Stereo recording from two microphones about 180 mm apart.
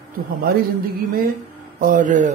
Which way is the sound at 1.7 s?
50° right (ahead or behind).